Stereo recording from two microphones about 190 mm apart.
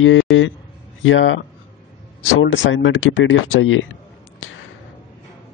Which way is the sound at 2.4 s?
80° left.